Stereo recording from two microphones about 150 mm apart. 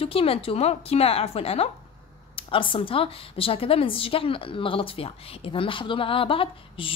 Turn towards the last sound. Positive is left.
turn(degrees=35)  # may be behind; listen again after turning